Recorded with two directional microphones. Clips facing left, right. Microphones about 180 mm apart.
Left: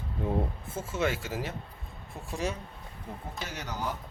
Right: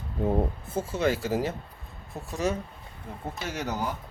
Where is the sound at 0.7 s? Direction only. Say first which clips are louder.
Right 4 dB; 35° right (ahead or behind).